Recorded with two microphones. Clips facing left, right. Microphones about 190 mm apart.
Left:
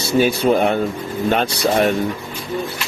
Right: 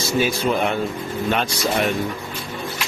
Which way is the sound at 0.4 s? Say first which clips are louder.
Left 5 dB; 40° left (ahead or behind).